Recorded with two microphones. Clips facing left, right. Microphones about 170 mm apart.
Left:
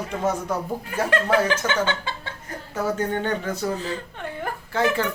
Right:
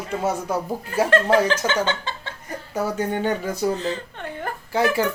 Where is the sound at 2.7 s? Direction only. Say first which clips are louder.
Right 1 dB; 10° right (ahead or behind).